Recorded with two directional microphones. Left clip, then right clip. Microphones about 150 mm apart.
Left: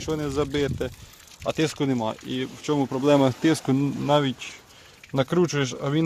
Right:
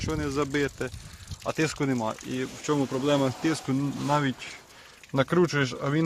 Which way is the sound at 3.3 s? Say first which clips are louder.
Left 6 dB; 70° left (ahead or behind).